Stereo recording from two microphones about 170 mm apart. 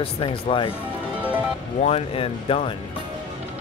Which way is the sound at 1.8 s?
35° left (ahead or behind).